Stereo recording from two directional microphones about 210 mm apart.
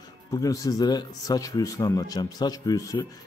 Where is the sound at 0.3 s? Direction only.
15° left (ahead or behind).